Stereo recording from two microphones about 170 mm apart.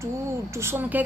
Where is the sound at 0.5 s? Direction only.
15° right (ahead or behind).